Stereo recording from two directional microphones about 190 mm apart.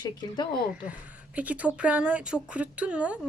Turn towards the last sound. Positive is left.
turn(degrees=-5)  # may be behind; listen again after turning